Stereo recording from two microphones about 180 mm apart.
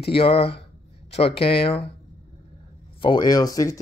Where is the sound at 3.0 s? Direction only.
25° left (ahead or behind).